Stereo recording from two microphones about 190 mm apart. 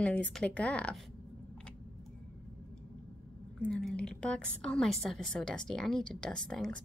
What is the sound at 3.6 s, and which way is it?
A woman's voice, 5° left (ahead or behind).